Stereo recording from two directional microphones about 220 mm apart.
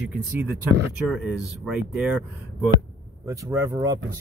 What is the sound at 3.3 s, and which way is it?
Speech, 15° right (ahead or behind).